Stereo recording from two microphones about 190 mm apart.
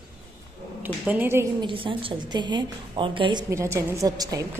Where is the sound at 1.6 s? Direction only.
25° right (ahead or behind).